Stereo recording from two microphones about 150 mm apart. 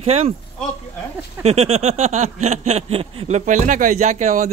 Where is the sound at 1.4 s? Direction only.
40° right (ahead or behind).